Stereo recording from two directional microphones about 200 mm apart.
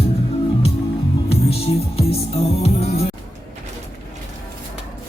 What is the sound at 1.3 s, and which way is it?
Music, 30° left (ahead or behind).